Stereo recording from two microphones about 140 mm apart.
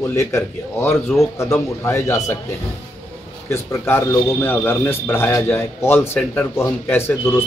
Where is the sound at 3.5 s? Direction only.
15° left (ahead or behind).